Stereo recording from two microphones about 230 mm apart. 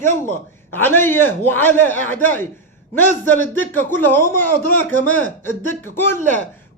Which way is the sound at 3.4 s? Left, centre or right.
Centre.